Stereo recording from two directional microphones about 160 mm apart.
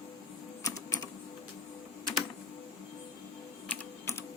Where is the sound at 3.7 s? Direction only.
15° left (ahead or behind).